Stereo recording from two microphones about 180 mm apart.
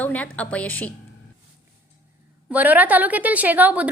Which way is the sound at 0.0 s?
10° left (ahead or behind).